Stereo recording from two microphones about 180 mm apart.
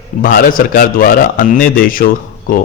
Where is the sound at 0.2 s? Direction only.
50° left (ahead or behind).